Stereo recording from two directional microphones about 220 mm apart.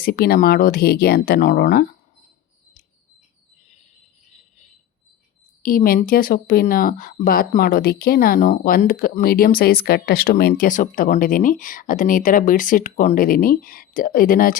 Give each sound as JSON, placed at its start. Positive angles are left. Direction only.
{"t": 0.0, "sound": "speech", "side_deg": 45}
{"t": 5.6, "sound": "speech", "side_deg": 40}